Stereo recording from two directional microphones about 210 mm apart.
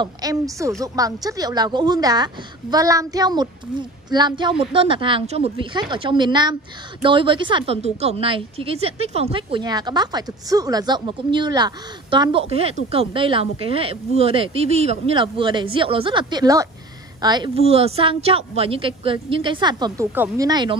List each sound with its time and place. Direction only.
0.0 s a woman's voice: 15° right (ahead or behind)